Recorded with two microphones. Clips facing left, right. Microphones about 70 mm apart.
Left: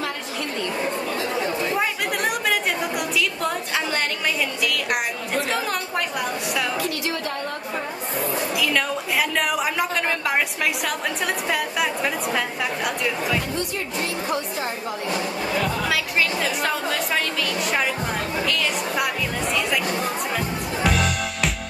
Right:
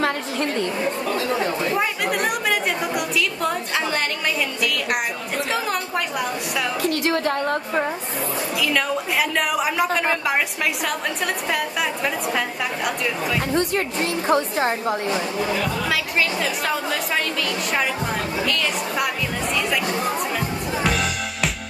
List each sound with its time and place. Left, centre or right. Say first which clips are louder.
0.0 s a sound: right 6 dB; right
1.6 s chatter: right 1 dB; centre
3.2 s a sound: right 1 dB; centre
5.3 s a woman's voice: even; centre
6.8 s a woman's voice: right 5 dB; right
8.5 s a woman's voice: right 3 dB; centre
11.5 s a woman's voice: even; centre
14.2 s speech: right 6 dB; right
15.8 s a woman's voice: even; centre
20.0 s music: right 2 dB; centre